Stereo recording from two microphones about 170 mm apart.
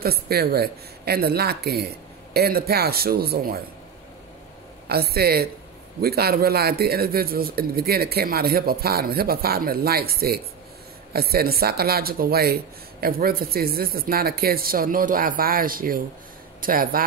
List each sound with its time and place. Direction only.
0.0 s speech: 65° right (ahead or behind)
4.8 s speech: 65° right (ahead or behind)